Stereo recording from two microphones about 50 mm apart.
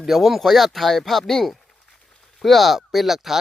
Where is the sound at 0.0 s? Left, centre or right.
Centre.